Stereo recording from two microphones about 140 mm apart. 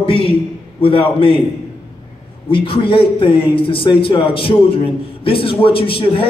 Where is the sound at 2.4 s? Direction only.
40° left (ahead or behind).